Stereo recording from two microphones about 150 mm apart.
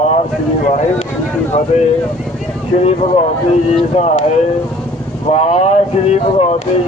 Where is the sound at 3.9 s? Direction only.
45° left (ahead or behind).